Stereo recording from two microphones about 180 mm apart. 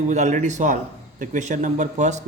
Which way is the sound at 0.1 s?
40° right (ahead or behind).